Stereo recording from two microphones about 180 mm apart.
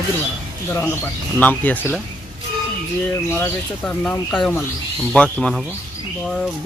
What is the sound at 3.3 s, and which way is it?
Speech, 10° left (ahead or behind).